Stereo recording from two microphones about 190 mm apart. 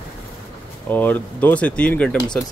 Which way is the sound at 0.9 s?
10° left (ahead or behind).